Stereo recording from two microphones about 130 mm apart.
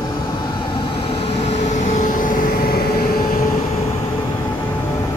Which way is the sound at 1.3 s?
60° left (ahead or behind).